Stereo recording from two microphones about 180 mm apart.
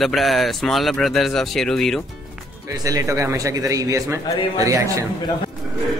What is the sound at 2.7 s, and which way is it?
A man's voice, 20° right (ahead or behind).